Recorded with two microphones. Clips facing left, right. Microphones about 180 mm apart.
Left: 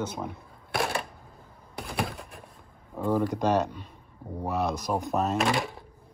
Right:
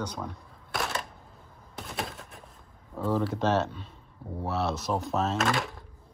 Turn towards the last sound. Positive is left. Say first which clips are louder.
# left 2 dB
turn(degrees=0)  # may be behind; listen again after turning